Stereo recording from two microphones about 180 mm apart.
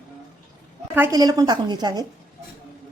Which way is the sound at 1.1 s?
20° right (ahead or behind).